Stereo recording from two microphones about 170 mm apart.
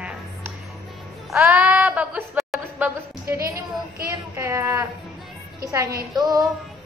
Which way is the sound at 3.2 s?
15° right (ahead or behind).